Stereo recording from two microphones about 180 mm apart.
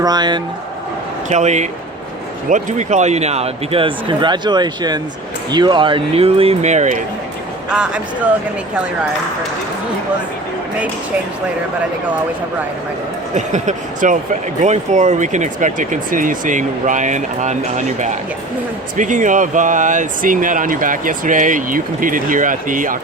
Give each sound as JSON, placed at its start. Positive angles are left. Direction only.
{"t": 0.0, "sound": "speech", "side_deg": -25}
{"t": 1.3, "sound": "speech", "side_deg": -40}
{"t": 7.7, "sound": "speech", "side_deg": -5}
{"t": 13.3, "sound": "speech", "side_deg": -40}